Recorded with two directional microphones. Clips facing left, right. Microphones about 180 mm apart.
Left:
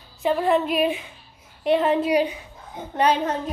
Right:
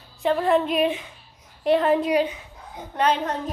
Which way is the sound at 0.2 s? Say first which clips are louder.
Even; centre (ahead or behind).